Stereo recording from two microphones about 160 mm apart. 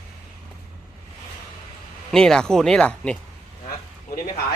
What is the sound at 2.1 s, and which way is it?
Speech, 5° left (ahead or behind).